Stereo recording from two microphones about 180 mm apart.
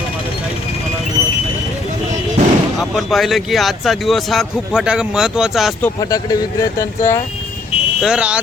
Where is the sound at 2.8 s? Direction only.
Centre (ahead or behind).